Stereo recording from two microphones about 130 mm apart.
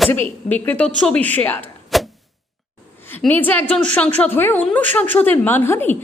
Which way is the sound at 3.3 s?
15° left (ahead or behind).